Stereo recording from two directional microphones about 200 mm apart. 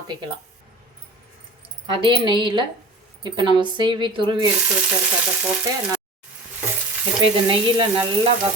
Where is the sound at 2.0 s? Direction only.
25° right (ahead or behind).